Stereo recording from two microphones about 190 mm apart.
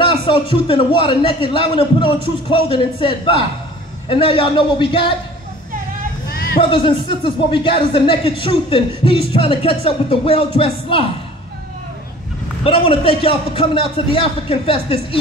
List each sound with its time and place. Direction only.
0.0 s speech: 25° left (ahead or behind)
6.3 s a sound: 55° left (ahead or behind)
6.6 s speech: 25° left (ahead or behind)
12.6 s speech: 30° left (ahead or behind)